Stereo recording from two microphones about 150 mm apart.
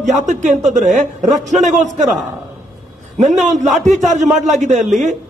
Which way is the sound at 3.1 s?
50° right (ahead or behind).